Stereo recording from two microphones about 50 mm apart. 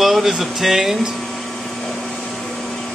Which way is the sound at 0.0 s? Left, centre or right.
Centre.